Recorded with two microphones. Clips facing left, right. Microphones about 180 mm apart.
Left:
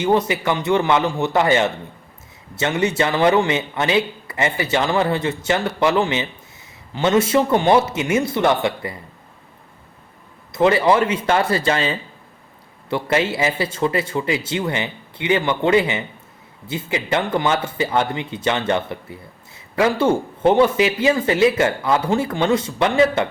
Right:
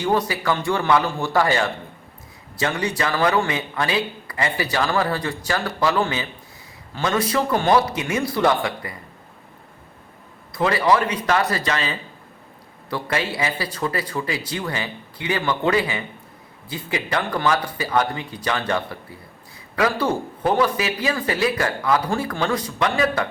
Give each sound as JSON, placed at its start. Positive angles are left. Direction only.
{"t": 0.0, "sound": "a man's voice", "side_deg": 20}
{"t": 10.5, "sound": "a man's voice", "side_deg": 25}